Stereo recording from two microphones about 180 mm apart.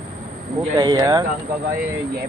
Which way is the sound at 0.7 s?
20° right (ahead or behind).